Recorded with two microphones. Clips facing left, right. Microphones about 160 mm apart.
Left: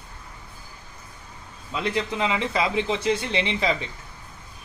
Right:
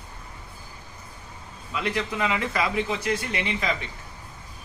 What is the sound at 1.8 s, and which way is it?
Speech, 25° left (ahead or behind).